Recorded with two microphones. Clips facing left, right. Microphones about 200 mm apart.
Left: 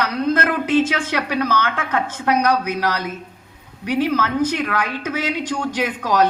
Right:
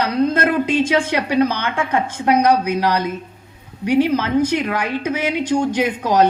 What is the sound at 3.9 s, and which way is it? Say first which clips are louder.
A woman's voice: right 4 dB; 15° right (ahead or behind).